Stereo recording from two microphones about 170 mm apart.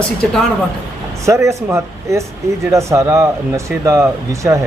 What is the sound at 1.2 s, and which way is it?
Speech, 15° right (ahead or behind).